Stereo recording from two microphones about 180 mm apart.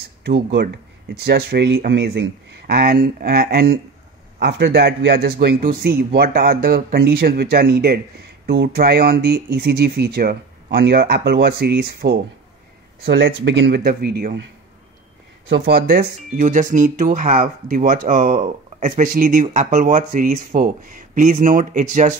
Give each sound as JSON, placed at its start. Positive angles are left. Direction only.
{"t": 0.2, "sound": "speech", "side_deg": -75}
{"t": 4.4, "sound": "speech", "side_deg": -75}